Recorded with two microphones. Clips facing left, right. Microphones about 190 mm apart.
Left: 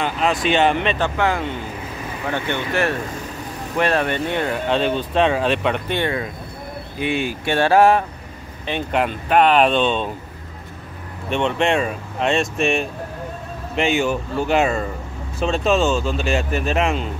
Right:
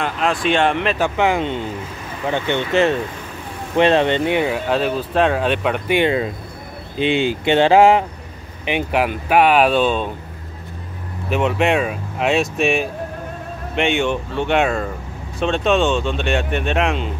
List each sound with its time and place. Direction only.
0.0 s speech: centre (ahead or behind)
1.0 s speech: 15° right (ahead or behind)
5.9 s speech: 20° right (ahead or behind); by 10.1 s 5° right (ahead or behind)
11.2 s speech: 5° right (ahead or behind)